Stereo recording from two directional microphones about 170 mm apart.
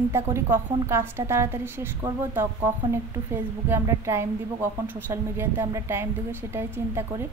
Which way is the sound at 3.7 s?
15° right (ahead or behind).